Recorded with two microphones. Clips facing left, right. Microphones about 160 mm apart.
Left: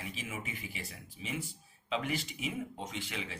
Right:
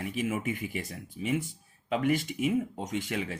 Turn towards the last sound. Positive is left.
turn(degrees=-45)  # may be behind; listen again after turning